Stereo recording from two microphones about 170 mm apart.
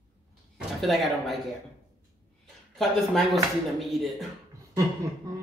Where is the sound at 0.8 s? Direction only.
Centre (ahead or behind).